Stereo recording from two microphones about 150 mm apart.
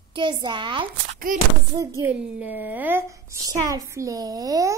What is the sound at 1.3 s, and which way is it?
Speech, 65° right (ahead or behind).